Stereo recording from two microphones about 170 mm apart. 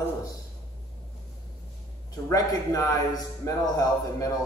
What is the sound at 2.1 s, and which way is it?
A man's voice, 20° left (ahead or behind).